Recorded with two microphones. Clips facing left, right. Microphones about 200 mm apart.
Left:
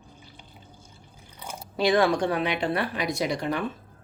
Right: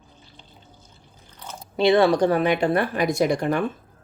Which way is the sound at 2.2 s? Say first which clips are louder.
Right 6 dB; 45° right (ahead or behind).